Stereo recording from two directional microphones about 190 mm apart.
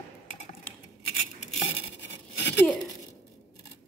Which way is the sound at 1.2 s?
40° left (ahead or behind).